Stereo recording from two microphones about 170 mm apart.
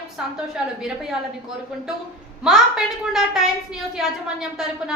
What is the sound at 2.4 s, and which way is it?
A woman's voice, centre (ahead or behind).